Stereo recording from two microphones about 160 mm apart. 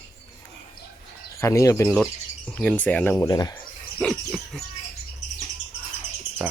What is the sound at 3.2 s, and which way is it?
Speech, 25° left (ahead or behind).